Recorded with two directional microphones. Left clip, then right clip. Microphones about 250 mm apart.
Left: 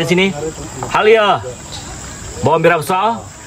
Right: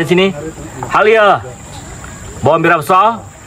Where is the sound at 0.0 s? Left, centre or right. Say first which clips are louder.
Right 2 dB; centre.